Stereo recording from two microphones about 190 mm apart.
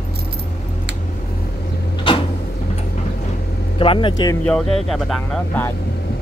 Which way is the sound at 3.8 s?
25° left (ahead or behind).